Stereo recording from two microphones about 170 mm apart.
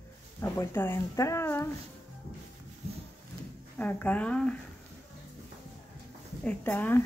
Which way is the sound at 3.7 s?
10° left (ahead or behind).